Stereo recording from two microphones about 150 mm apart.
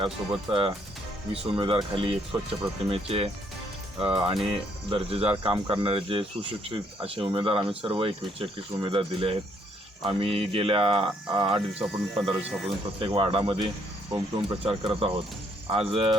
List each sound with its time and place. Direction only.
0.5 s speech: 40° right (ahead or behind)
11.7 s a man's voice: 5° right (ahead or behind)
13.0 s speech: 35° right (ahead or behind)